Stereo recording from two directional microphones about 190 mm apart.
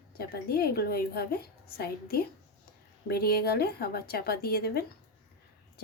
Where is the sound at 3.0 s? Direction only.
55° left (ahead or behind).